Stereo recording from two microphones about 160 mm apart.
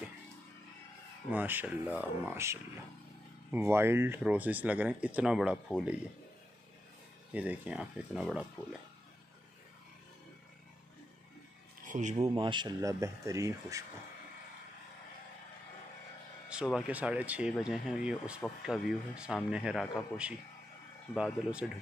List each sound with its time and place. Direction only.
1.3 s speech: 10° right (ahead or behind)
7.3 s speech: 10° right (ahead or behind)
11.8 s speech: 50° right (ahead or behind)
12.4 s speech: 30° right (ahead or behind)
16.4 s speech: 5° right (ahead or behind)